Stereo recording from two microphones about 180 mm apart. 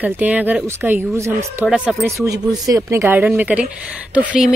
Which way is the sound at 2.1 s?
20° right (ahead or behind).